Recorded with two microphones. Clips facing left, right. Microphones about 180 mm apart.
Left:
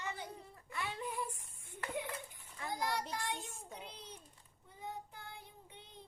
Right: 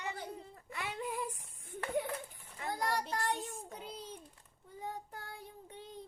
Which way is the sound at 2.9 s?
45° right (ahead or behind).